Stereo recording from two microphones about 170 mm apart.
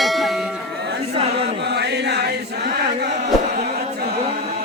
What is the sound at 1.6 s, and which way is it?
Chant, 80° right.